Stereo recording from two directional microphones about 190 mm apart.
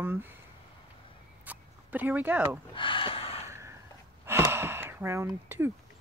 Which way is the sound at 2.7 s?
25° left (ahead or behind).